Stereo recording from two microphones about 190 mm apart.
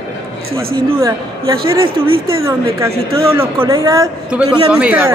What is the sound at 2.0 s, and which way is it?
Speech, 90° right.